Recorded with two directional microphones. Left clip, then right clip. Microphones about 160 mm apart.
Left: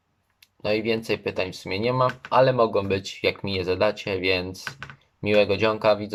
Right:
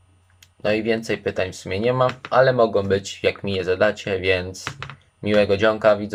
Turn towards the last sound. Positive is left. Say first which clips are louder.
# right 4 dB
turn(degrees=5)  # may be behind; listen again after turning